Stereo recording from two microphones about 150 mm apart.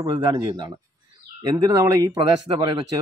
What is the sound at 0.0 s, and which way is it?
Speech, 30° right (ahead or behind).